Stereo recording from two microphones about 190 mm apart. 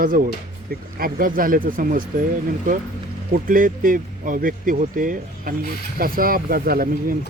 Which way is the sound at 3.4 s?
45° right (ahead or behind).